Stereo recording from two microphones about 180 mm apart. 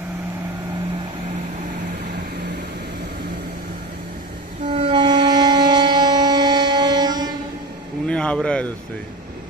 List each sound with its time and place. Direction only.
4.6 s wind instrument: 30° right (ahead or behind)
8.1 s a man's voice: 5° left (ahead or behind)